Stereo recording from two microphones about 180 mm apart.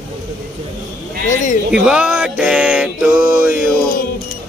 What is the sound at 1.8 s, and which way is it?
Music, 5° right (ahead or behind).